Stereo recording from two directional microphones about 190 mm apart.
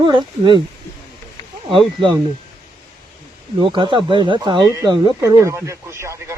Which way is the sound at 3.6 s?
25° right (ahead or behind).